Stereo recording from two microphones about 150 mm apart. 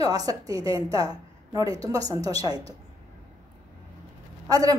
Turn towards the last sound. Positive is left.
turn(degrees=-25)  # may be behind; listen again after turning